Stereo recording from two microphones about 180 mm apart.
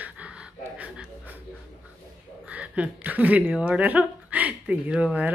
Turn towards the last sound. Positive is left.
turn(degrees=-5)  # may be behind; listen again after turning